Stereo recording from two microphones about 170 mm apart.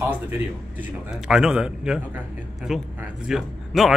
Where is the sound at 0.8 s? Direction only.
5° right (ahead or behind).